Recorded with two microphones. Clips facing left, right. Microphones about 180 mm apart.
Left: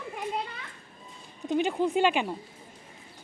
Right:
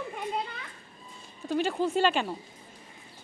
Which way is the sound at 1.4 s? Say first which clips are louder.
Left 2 dB; 15° left (ahead or behind).